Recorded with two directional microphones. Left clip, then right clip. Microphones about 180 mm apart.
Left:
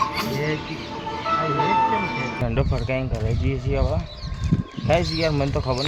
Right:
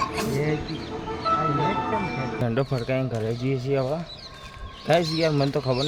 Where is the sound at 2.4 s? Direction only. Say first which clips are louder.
Even; 15° right (ahead or behind).